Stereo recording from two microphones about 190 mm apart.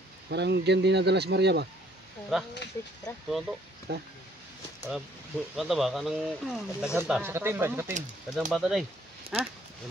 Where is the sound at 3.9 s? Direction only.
60° right (ahead or behind).